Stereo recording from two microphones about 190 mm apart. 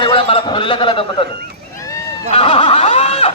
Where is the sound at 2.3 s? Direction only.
30° left (ahead or behind).